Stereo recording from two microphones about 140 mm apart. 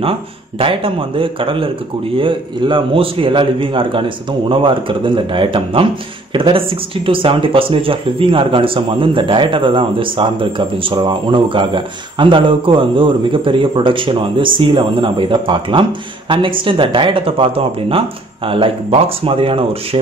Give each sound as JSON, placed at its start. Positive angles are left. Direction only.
{"t": 0.6, "sound": "speech", "side_deg": -40}